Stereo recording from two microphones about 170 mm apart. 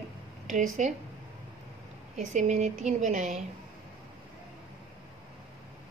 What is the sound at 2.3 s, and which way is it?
A woman's voice, 45° right (ahead or behind).